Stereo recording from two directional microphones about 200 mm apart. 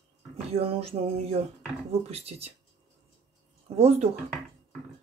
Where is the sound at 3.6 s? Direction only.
30° right (ahead or behind).